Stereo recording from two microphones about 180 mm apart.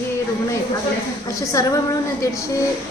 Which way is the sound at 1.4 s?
15° left (ahead or behind).